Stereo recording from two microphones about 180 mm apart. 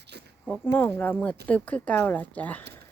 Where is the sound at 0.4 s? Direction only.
10° left (ahead or behind).